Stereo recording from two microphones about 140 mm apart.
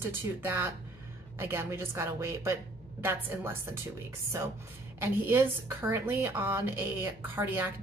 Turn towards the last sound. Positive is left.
turn(degrees=-15)  # may be behind; listen again after turning